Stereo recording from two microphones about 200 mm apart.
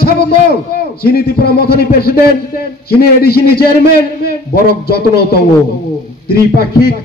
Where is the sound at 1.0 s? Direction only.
50° left (ahead or behind).